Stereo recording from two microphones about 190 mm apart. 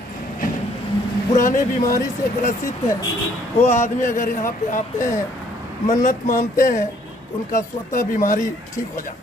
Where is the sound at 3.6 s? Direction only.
40° left (ahead or behind).